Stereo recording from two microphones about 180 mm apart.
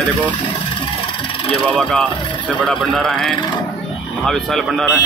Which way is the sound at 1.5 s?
Centre (ahead or behind).